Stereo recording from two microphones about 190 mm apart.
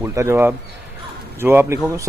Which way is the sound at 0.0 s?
15° right (ahead or behind).